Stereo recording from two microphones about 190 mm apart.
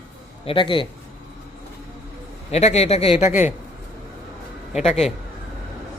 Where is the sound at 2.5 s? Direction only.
35° left (ahead or behind).